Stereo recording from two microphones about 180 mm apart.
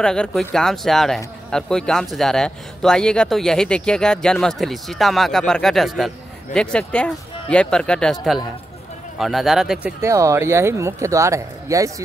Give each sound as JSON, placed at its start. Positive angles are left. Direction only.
{"t": 0.0, "sound": "speech", "side_deg": 5}
{"t": 10.0, "sound": "speech", "side_deg": -15}